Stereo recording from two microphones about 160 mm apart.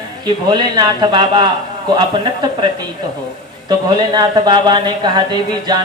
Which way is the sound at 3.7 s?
25° right (ahead or behind).